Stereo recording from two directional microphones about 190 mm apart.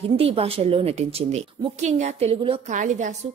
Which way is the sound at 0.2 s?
30° right (ahead or behind).